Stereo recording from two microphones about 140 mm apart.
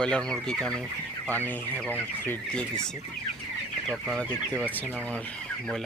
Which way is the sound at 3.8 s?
Centre (ahead or behind).